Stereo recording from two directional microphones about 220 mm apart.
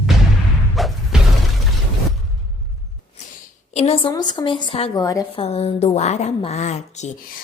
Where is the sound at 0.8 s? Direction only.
Centre (ahead or behind).